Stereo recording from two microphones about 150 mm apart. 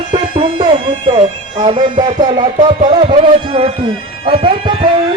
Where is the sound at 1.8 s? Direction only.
30° right (ahead or behind).